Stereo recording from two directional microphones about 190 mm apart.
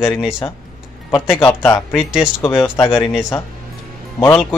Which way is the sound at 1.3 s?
10° left (ahead or behind).